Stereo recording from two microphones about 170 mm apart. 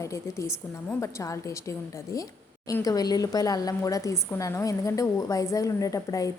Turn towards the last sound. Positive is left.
turn(degrees=20)  # may be behind; listen again after turning